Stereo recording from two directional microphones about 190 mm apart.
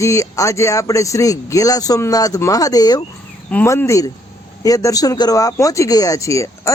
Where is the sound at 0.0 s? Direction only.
15° left (ahead or behind).